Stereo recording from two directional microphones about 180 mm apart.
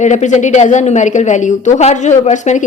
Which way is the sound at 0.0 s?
40° left (ahead or behind).